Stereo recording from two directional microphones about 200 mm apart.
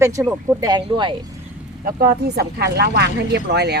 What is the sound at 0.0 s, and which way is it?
A woman's voice, 15° right (ahead or behind).